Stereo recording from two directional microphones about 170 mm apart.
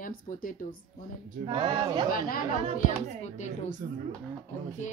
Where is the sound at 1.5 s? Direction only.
30° right (ahead or behind).